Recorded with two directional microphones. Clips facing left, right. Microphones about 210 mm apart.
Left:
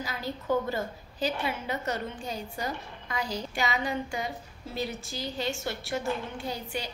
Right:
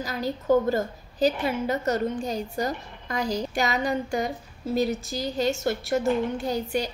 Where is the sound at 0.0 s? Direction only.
40° right (ahead or behind).